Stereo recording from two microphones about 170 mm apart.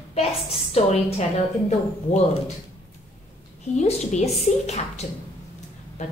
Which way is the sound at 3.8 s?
40° left (ahead or behind).